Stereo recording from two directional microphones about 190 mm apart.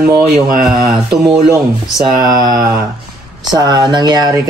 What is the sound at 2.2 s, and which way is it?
Speech, 20° right (ahead or behind).